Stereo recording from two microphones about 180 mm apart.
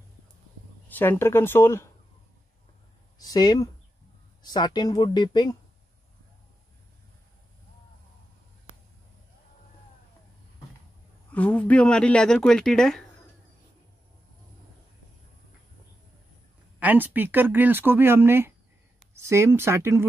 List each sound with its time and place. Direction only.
0.8 s speech: 10° left (ahead or behind)
3.2 s speech: 20° left (ahead or behind)
11.3 s speech: 10° left (ahead or behind)
16.8 s speech: 10° right (ahead or behind)